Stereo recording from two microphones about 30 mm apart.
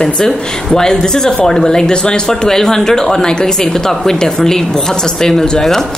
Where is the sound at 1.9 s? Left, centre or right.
Left.